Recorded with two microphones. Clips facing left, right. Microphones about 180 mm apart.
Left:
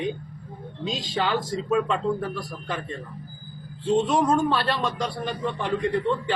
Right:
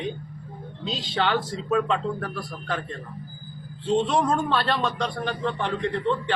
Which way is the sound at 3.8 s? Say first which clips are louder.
Left 1 dB; 10° left (ahead or behind).